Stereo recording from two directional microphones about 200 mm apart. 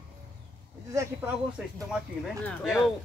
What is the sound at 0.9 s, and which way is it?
Speech, 15° right (ahead or behind).